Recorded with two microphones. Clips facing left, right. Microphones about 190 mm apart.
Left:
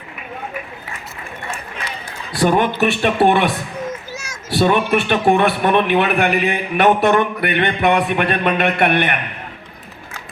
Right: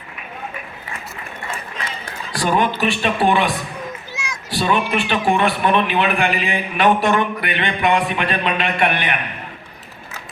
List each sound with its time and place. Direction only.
2.4 s speech: 60° left (ahead or behind)
4.1 s children playing: 40° left (ahead or behind)
4.5 s speech: 60° left (ahead or behind)
4.9 s speech: 45° left (ahead or behind)
5.2 s speech: 65° left (ahead or behind)